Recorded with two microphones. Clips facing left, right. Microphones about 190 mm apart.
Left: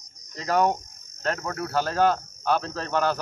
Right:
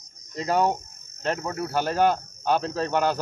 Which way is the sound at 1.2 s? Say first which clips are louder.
Right 1 dB; 20° right (ahead or behind).